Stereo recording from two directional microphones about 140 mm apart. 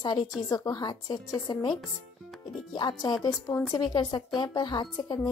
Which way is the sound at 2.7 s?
30° left (ahead or behind).